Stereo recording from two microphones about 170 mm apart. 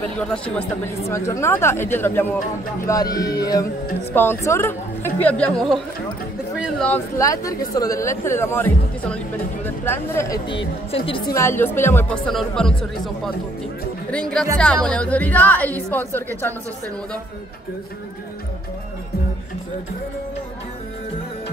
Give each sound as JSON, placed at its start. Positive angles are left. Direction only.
{"t": 0.2, "sound": "speech", "side_deg": 10}
{"t": 7.2, "sound": "speech", "side_deg": 20}
{"t": 10.9, "sound": "a woman's voice", "side_deg": 30}
{"t": 11.3, "sound": "speech", "side_deg": 15}